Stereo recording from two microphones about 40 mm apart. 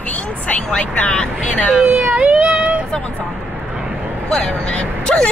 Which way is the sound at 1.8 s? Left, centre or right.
Right.